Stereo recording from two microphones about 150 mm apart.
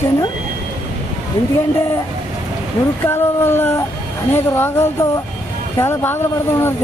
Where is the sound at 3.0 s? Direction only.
15° left (ahead or behind).